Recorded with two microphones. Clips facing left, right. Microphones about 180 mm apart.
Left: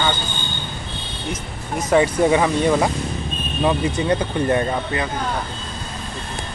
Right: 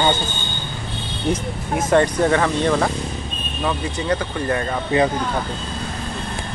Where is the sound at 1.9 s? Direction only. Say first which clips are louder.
Left 1 dB; 10° left (ahead or behind).